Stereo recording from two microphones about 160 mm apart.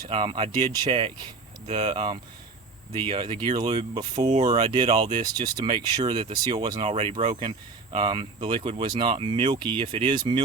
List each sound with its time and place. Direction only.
0.1 s speech: 30° right (ahead or behind)